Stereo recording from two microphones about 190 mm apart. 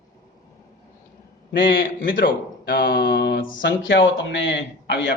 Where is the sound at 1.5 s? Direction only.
75° left (ahead or behind).